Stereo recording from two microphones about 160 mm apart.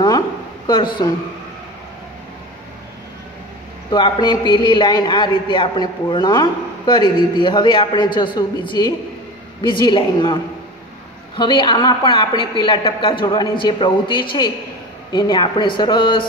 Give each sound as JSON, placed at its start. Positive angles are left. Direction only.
{"t": 0.7, "sound": "a man's voice", "side_deg": 30}
{"t": 3.9, "sound": "a man's voice", "side_deg": 30}